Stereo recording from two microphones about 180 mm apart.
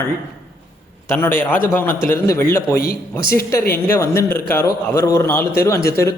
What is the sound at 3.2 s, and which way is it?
Speech, 55° left (ahead or behind).